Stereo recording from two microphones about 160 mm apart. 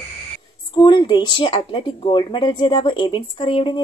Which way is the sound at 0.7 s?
30° left (ahead or behind).